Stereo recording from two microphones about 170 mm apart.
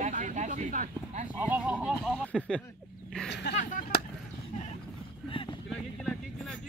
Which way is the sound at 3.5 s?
90° left.